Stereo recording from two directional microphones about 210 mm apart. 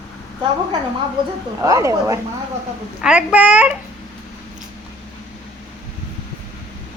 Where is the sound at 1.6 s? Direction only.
15° right (ahead or behind).